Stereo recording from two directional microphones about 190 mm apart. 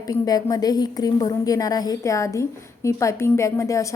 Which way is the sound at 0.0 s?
20° left (ahead or behind).